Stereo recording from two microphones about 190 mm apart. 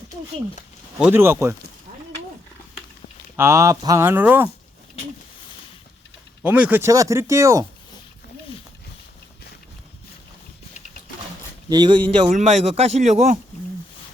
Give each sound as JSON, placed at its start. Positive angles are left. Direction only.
{"t": 0.9, "sound": "speech", "side_deg": -10}
{"t": 3.3, "sound": "speech", "side_deg": -15}
{"t": 6.4, "sound": "speech", "side_deg": -5}
{"t": 11.7, "sound": "speech", "side_deg": -25}
{"t": 12.3, "sound": "speech", "side_deg": -35}